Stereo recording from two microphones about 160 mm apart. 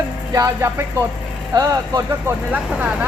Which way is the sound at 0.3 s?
20° right (ahead or behind).